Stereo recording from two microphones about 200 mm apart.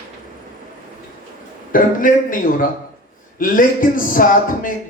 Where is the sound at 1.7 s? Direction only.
45° left (ahead or behind).